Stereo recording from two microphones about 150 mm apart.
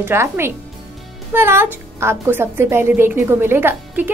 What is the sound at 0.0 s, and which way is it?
Speech, 15° right (ahead or behind).